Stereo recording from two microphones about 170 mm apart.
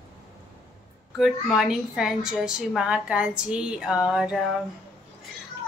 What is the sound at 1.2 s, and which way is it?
A woman's voice, centre (ahead or behind).